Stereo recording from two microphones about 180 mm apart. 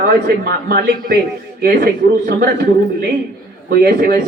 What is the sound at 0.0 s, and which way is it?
A man's voice, 55° right (ahead or behind).